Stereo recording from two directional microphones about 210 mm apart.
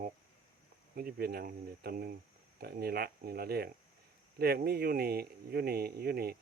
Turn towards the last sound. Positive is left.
turn(degrees=-45)  # may be behind; listen again after turning